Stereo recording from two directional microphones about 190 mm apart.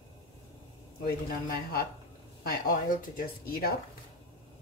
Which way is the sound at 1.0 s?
55° left (ahead or behind).